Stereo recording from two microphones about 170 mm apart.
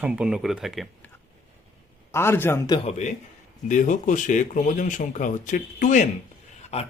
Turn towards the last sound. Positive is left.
turn(degrees=35)  # may be behind; listen again after turning